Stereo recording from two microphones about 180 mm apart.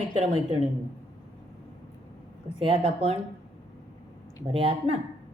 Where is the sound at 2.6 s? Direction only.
30° right (ahead or behind).